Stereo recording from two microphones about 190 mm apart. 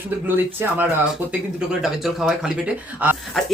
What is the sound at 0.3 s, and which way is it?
Speech, 10° right (ahead or behind).